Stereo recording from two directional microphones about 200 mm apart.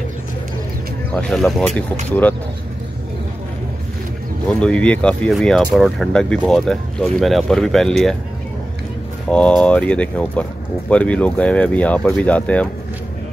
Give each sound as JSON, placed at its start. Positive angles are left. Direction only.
{"t": 1.1, "sound": "speech", "side_deg": 5}
{"t": 4.6, "sound": "speech", "side_deg": 5}
{"t": 9.3, "sound": "speech", "side_deg": 5}